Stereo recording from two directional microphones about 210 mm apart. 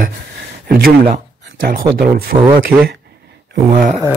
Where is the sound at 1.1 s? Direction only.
45° right (ahead or behind).